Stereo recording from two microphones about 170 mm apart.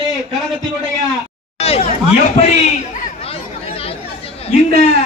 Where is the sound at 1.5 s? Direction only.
35° left (ahead or behind).